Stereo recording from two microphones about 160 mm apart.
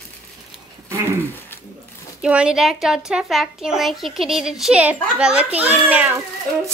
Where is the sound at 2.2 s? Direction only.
5° right (ahead or behind).